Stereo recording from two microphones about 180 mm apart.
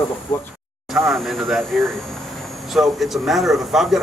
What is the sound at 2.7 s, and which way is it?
Speech, centre (ahead or behind).